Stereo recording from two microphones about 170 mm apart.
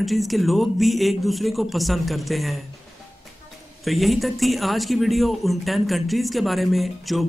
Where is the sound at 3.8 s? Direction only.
Centre (ahead or behind).